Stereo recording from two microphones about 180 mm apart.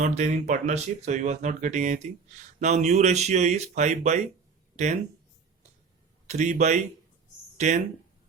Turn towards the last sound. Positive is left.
turn(degrees=-40)  # may be behind; listen again after turning